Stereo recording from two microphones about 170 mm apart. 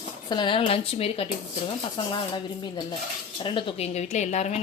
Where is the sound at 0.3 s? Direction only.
25° left (ahead or behind).